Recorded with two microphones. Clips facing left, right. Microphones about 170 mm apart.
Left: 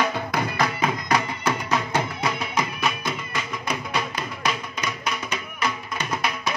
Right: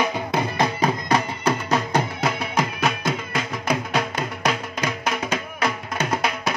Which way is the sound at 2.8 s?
90° right.